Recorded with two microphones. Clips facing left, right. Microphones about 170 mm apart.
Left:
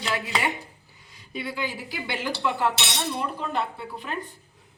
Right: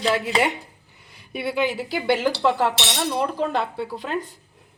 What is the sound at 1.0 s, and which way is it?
Speech, 65° right (ahead or behind).